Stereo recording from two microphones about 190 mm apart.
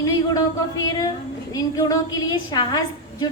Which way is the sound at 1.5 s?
15° left (ahead or behind).